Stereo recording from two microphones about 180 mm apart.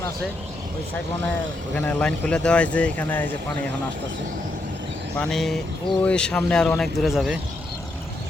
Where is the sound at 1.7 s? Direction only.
5° left (ahead or behind).